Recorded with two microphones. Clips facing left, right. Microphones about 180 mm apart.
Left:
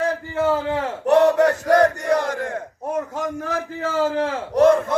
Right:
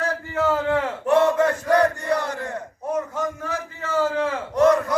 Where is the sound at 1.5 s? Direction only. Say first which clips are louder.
Left 3 dB; 40° left (ahead or behind).